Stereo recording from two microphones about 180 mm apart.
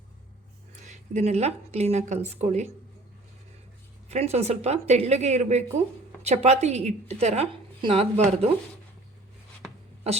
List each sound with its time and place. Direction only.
0.9 s a woman's voice: 40° right (ahead or behind)
4.1 s a woman's voice: 35° right (ahead or behind)